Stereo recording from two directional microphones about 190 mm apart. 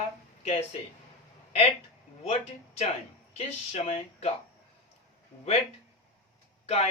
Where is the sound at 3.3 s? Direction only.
35° left (ahead or behind).